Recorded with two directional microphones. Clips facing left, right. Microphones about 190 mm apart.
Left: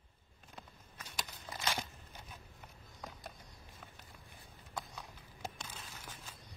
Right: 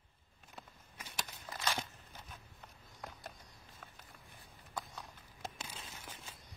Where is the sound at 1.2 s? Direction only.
10° left (ahead or behind).